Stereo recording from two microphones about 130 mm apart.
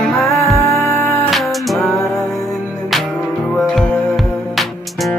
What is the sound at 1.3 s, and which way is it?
Music, centre (ahead or behind).